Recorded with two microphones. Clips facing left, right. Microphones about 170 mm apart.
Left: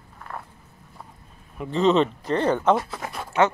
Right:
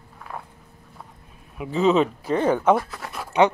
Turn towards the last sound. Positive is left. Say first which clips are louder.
# right 2 dB
turn(degrees=-15)  # may be behind; listen again after turning